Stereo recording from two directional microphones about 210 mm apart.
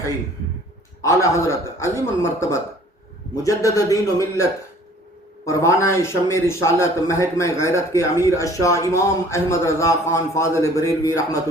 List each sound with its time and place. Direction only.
1.0 s a man's voice: 15° left (ahead or behind)
5.5 s a man's voice: 15° left (ahead or behind)